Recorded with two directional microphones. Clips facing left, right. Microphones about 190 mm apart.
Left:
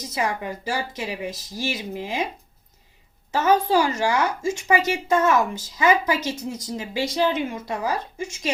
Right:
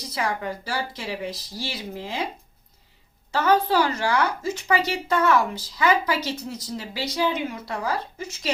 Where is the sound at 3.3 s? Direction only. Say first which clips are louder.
Left 1 dB; 20° left (ahead or behind).